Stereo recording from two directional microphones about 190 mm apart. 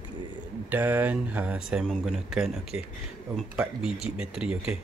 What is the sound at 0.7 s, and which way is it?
Speech, 10° right (ahead or behind).